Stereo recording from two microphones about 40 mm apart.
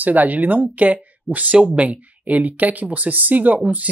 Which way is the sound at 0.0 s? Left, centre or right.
Right.